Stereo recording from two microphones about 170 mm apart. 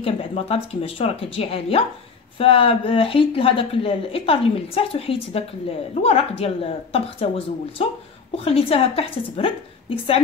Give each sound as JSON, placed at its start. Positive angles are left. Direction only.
{"t": 0.0, "sound": "speech", "side_deg": 35}